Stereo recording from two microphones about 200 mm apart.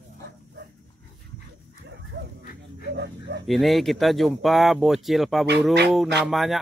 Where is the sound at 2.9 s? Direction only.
60° right (ahead or behind).